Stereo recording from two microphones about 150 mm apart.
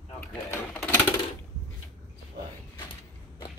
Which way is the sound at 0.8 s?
15° left (ahead or behind).